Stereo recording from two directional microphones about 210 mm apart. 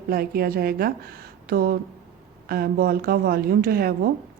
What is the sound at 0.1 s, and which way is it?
Speech, 45° right (ahead or behind).